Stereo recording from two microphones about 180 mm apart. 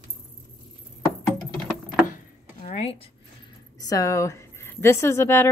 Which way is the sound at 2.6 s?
35° left (ahead or behind).